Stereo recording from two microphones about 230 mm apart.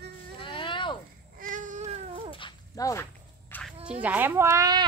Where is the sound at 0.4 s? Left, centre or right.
Left.